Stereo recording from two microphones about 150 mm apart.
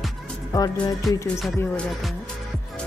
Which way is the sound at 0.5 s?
25° left (ahead or behind).